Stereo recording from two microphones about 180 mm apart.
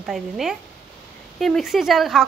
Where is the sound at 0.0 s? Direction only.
Centre (ahead or behind).